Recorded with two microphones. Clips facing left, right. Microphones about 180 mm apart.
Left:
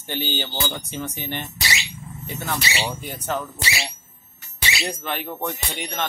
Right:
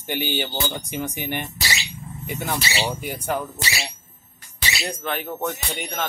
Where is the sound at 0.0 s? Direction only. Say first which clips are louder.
Right 2 dB; 15° right (ahead or behind).